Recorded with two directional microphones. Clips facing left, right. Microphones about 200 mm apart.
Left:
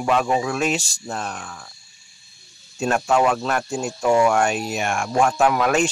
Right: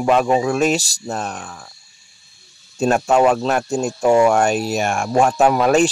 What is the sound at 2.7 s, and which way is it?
Speech, 40° right (ahead or behind).